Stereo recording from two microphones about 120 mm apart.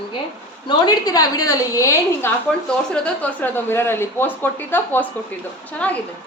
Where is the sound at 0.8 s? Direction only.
30° left (ahead or behind).